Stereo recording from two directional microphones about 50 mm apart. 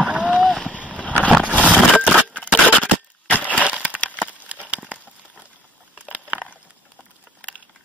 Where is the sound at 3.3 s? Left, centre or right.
Right.